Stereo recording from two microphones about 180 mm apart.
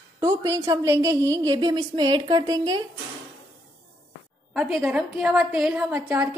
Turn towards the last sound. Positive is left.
turn(degrees=-10)  # may be behind; listen again after turning